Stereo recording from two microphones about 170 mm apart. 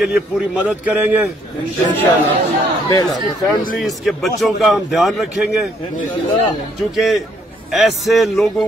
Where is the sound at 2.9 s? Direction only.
20° left (ahead or behind).